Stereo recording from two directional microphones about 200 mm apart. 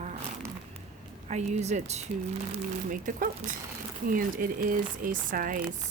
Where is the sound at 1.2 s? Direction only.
35° right (ahead or behind).